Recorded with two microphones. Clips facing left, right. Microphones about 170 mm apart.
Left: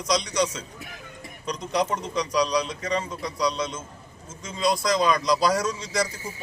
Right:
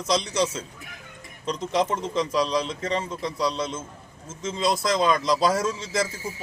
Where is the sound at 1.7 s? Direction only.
25° right (ahead or behind).